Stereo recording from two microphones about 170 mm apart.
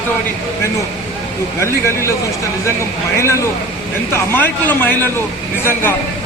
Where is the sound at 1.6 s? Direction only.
15° left (ahead or behind).